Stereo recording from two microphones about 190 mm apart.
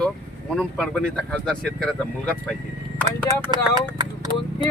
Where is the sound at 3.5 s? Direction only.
20° right (ahead or behind).